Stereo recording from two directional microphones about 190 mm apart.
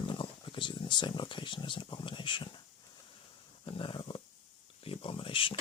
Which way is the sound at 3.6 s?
25° left (ahead or behind).